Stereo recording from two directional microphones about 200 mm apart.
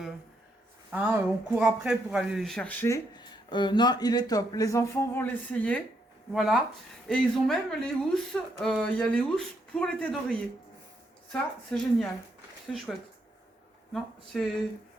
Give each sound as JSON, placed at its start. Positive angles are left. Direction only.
{"t": 0.9, "sound": "speech", "side_deg": -10}
{"t": 14.3, "sound": "speech", "side_deg": 0}